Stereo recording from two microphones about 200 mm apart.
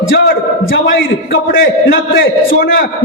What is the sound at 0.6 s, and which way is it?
Speech, 70° left (ahead or behind).